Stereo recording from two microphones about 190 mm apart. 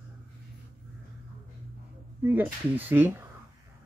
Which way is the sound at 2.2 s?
10° right (ahead or behind).